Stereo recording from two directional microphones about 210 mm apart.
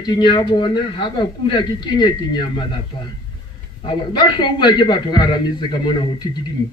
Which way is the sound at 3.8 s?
20° left (ahead or behind).